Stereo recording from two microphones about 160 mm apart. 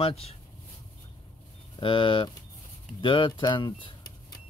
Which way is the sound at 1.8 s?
30° left (ahead or behind).